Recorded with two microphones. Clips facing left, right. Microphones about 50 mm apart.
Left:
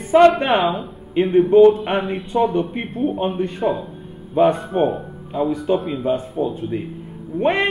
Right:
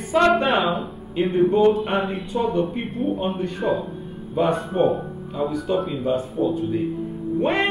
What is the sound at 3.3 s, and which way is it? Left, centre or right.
Speech, left.